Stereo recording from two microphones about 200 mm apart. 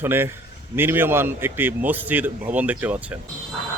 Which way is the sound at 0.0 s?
10° right (ahead or behind).